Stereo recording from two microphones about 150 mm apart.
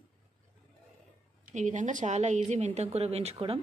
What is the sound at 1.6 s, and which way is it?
Speech, 55° right (ahead or behind).